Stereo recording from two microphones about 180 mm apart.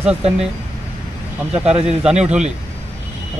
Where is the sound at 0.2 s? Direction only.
35° right (ahead or behind).